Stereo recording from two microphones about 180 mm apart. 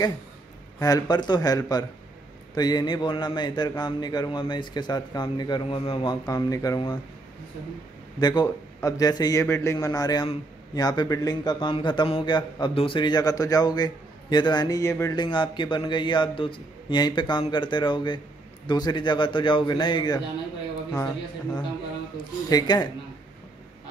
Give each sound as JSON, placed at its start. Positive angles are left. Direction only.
{"t": 0.7, "sound": "a man's voice", "side_deg": 20}
{"t": 8.2, "sound": "a man's voice", "side_deg": 25}
{"t": 22.1, "sound": "a man's voice", "side_deg": 20}